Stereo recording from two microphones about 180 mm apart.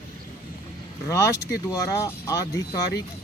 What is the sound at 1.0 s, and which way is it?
Speech, 15° left (ahead or behind).